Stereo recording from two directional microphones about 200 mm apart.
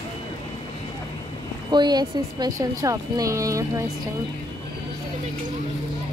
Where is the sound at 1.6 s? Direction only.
20° right (ahead or behind).